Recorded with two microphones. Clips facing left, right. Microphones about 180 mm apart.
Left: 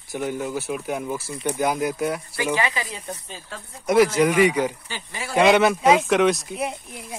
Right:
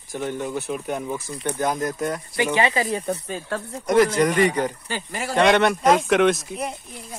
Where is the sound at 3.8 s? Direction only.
10° left (ahead or behind).